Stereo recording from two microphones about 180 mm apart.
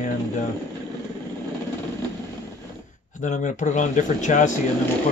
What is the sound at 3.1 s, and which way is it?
Speech, 45° left (ahead or behind).